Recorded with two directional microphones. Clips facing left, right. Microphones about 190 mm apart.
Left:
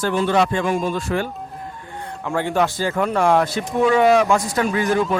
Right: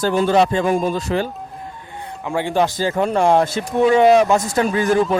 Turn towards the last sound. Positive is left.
turn(degrees=-35)  # may be behind; listen again after turning